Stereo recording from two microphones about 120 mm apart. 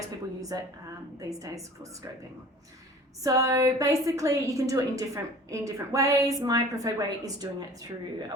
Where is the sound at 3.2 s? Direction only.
30° right (ahead or behind).